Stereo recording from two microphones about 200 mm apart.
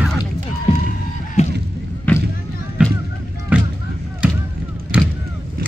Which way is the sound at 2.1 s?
5° left (ahead or behind).